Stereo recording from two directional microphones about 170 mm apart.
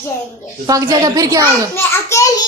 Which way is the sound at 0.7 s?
20° right (ahead or behind).